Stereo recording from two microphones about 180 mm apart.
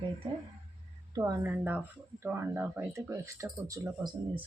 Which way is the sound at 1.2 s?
15° right (ahead or behind).